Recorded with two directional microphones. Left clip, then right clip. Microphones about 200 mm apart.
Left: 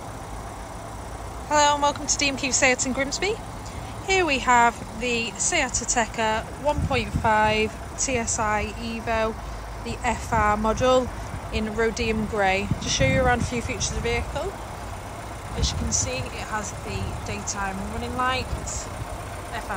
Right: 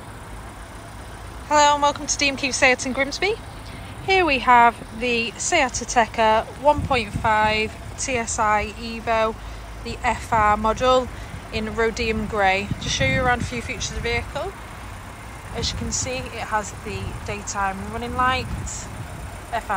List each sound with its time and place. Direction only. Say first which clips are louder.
1.5 s a woman's voice: right 3 dB; 5° left (ahead or behind)
15.6 s speech: even; 5° left (ahead or behind)